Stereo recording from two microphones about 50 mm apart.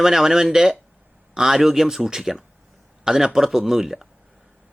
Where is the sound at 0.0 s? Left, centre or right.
Centre.